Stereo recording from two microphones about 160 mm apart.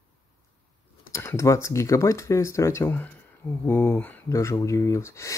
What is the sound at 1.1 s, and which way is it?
Speech, 20° left (ahead or behind).